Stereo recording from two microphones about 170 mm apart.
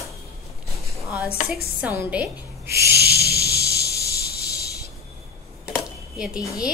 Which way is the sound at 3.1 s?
70° left (ahead or behind).